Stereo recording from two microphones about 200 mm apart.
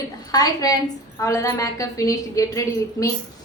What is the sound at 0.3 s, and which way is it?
A woman's voice, 20° left (ahead or behind).